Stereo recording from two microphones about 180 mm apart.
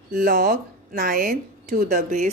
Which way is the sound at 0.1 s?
45° right (ahead or behind).